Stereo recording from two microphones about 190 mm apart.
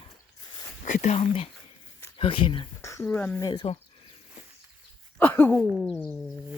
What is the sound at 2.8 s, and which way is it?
Speech, 15° left (ahead or behind).